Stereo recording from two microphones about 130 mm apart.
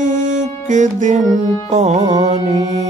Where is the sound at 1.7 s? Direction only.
60° right (ahead or behind).